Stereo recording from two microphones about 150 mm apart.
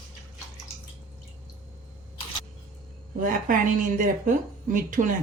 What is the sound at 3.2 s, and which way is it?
A woman's voice, 60° right (ahead or behind).